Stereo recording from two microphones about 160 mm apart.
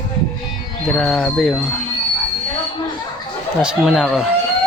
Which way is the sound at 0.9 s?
5° left (ahead or behind).